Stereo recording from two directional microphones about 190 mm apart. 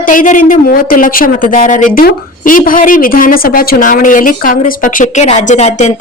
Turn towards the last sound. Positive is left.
turn(degrees=35)  # may be behind; listen again after turning